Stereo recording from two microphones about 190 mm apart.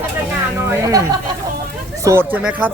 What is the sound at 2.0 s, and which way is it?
Speech, 15° right (ahead or behind).